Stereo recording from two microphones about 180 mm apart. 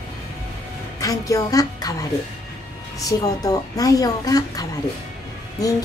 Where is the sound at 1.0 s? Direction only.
20° left (ahead or behind).